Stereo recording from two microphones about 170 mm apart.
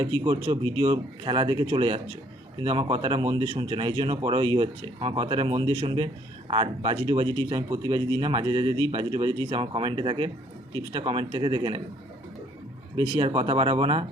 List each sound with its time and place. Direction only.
0.3 s speech: 30° right (ahead or behind)
13.0 s speech: 30° right (ahead or behind)